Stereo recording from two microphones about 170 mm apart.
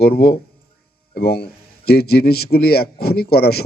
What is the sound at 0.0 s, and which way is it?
A man's voice, 65° left (ahead or behind).